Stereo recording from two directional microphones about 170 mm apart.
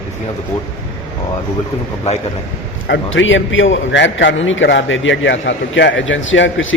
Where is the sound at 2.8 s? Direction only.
90° left.